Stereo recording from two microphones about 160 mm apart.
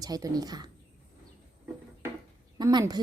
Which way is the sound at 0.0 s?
25° right (ahead or behind).